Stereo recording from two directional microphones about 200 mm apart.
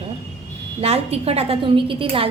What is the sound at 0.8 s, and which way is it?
A woman's voice, 30° right (ahead or behind).